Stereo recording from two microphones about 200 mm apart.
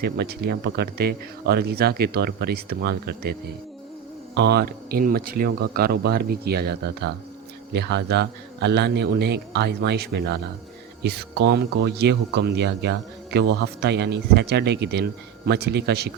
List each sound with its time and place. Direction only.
0.0 s speech: 50° right (ahead or behind)
4.4 s a man's voice: 55° right (ahead or behind)